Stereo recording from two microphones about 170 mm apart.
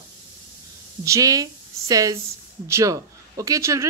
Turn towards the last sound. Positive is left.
turn(degrees=-15)  # may be behind; listen again after turning